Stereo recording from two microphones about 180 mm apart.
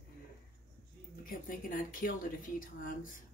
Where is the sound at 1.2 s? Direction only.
50° left (ahead or behind).